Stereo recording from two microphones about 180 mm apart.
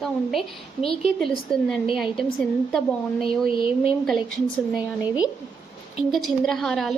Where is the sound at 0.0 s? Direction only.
Centre (ahead or behind).